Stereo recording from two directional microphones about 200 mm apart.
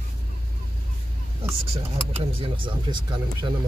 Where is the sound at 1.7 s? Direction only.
25° right (ahead or behind).